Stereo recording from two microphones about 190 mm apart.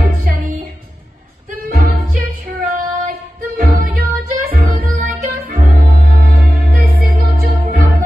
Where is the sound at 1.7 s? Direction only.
50° right (ahead or behind).